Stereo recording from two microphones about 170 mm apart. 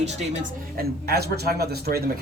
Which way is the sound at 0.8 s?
65° right (ahead or behind).